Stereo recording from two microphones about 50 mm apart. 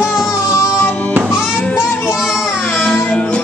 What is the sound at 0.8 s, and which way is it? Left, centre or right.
Music, left.